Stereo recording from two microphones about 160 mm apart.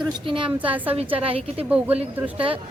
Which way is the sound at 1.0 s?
35° right (ahead or behind).